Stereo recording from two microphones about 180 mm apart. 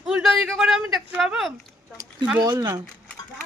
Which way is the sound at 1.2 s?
Centre (ahead or behind).